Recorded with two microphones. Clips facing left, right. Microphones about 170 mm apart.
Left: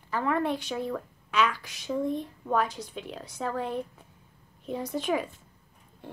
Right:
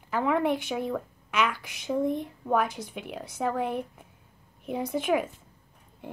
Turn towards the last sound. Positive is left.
turn(degrees=-10)  # may be behind; listen again after turning